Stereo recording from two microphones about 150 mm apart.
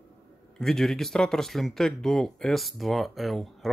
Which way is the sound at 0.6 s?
5° left (ahead or behind).